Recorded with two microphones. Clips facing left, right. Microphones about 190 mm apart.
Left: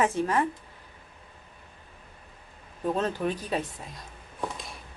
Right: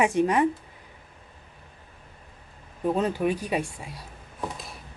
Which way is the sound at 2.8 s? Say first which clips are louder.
Right 3 dB; 10° right (ahead or behind).